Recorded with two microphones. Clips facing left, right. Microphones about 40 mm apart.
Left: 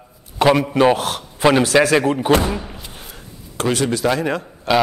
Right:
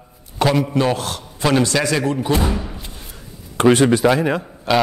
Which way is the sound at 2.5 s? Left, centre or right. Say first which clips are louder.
Right 1 dB; centre.